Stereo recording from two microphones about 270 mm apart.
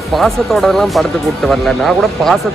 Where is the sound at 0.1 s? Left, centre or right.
Centre.